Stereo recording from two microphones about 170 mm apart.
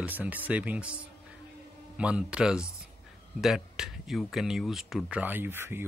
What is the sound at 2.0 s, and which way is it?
Speech, 5° right (ahead or behind).